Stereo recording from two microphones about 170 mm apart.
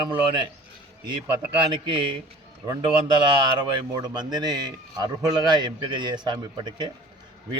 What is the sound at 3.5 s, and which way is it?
A man's voice, 25° right (ahead or behind).